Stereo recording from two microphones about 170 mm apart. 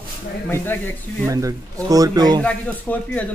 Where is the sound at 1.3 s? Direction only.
20° right (ahead or behind).